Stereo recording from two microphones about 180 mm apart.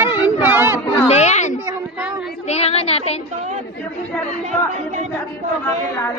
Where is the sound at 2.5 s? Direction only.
35° left (ahead or behind).